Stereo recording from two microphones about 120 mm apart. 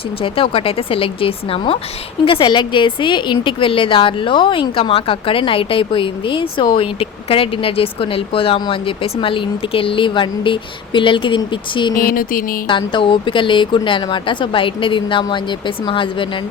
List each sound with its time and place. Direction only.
0.2 s speech: 50° left (ahead or behind)